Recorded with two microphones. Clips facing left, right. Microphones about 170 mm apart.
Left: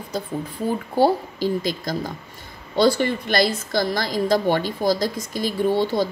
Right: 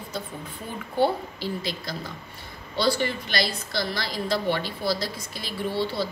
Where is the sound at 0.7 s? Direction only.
40° left (ahead or behind).